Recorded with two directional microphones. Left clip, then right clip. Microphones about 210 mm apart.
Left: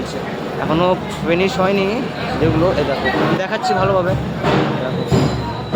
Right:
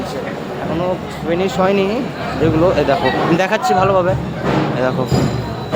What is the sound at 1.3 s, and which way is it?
Speech, 5° right (ahead or behind).